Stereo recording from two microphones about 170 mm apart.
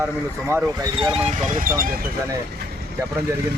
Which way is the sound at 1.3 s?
45° right (ahead or behind).